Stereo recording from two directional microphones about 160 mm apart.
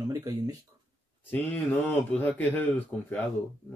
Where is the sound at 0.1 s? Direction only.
20° right (ahead or behind).